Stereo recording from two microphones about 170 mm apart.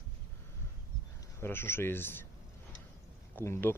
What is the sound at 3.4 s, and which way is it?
Speech, 10° left (ahead or behind).